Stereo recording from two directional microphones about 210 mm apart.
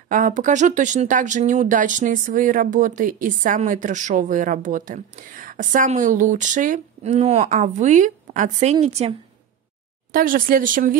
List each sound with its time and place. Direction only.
0.1 s speech: 40° right (ahead or behind)
10.1 s speech: 40° right (ahead or behind)